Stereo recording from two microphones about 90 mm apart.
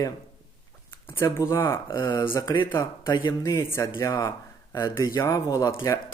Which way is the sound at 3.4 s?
30° left (ahead or behind).